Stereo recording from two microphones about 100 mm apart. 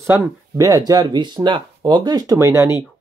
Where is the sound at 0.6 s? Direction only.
40° right (ahead or behind).